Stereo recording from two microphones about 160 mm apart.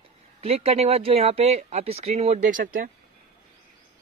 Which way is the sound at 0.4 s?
40° right (ahead or behind).